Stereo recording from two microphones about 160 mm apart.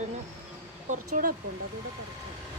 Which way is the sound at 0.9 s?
55° right (ahead or behind).